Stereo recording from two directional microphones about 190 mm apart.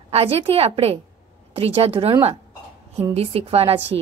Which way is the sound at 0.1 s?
30° right (ahead or behind).